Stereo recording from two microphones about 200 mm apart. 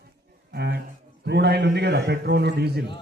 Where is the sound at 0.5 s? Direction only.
55° right (ahead or behind).